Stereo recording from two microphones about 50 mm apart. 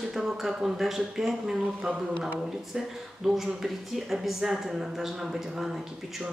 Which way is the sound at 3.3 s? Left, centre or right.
Centre.